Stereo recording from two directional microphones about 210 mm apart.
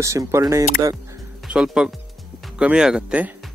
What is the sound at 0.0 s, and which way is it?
Speech, 15° right (ahead or behind).